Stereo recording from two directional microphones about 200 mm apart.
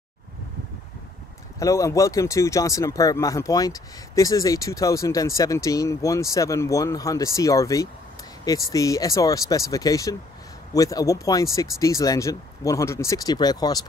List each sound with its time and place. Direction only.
1.6 s speech: 15° left (ahead or behind)